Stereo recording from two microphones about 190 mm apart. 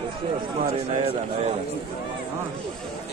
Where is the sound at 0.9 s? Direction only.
30° right (ahead or behind).